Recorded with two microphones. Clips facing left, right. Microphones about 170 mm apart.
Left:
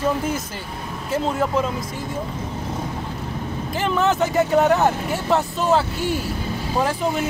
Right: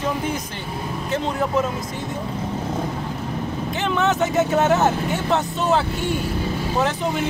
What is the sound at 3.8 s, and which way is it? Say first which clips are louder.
Speech: left 1 dB; centre (ahead or behind).